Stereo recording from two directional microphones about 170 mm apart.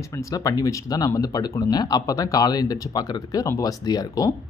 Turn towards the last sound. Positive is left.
turn(degrees=20)  # may be behind; listen again after turning